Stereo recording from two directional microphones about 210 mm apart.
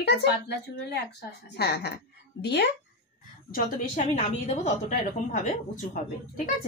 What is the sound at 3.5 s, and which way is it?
A woman's voice, 40° left (ahead or behind).